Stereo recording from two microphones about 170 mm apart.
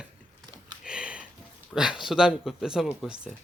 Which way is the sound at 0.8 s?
5° right (ahead or behind).